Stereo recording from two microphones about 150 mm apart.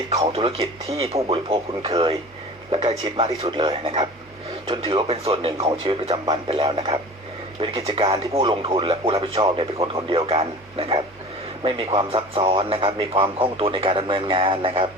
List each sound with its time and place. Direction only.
0.3 s a man's voice: 35° right (ahead or behind)
3.2 s speech: 30° right (ahead or behind)
12.1 s speech: 40° right (ahead or behind)